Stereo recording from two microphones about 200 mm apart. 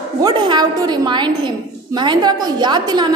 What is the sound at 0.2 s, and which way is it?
A woman's voice, 20° right (ahead or behind).